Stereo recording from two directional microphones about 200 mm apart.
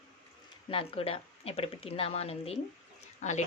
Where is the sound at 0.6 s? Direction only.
25° left (ahead or behind).